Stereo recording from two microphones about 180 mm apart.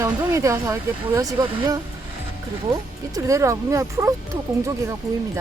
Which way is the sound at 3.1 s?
15° right (ahead or behind).